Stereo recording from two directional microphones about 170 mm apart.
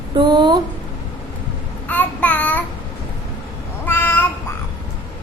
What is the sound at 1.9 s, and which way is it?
Child singing, 10° left (ahead or behind).